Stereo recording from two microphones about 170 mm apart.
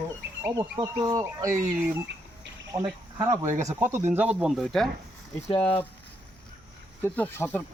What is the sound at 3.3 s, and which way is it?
Speech, 45° right (ahead or behind).